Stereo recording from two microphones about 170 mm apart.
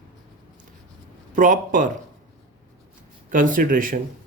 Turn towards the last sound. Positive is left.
turn(degrees=-55)  # may be behind; listen again after turning